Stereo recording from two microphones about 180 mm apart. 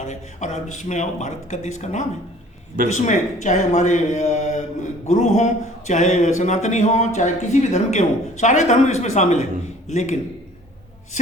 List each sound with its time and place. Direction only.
0.0 s a man's voice: 40° left (ahead or behind)
2.8 s speech: 50° right (ahead or behind)
3.4 s a man's voice: 40° left (ahead or behind)